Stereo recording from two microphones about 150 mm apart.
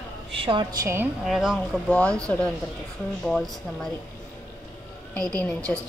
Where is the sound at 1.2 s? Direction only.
Centre (ahead or behind).